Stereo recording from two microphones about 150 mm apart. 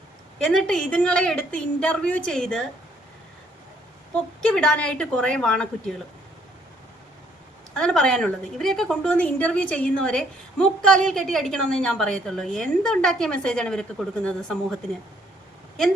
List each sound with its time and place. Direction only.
0.3 s a woman's voice: 5° left (ahead or behind)
4.5 s a woman's voice: 5° left (ahead or behind)
7.7 s a woman's voice: 5° left (ahead or behind)